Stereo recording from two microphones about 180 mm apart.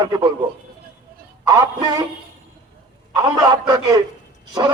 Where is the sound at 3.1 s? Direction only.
25° right (ahead or behind).